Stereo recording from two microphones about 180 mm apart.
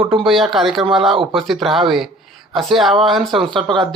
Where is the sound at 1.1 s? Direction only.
30° right (ahead or behind).